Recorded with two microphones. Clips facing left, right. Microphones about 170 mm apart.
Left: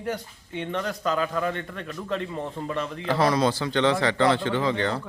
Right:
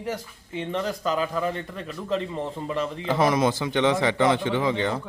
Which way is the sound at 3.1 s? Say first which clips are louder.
Even; 20° right (ahead or behind).